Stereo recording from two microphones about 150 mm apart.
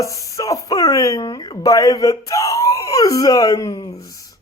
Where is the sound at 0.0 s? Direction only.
25° left (ahead or behind).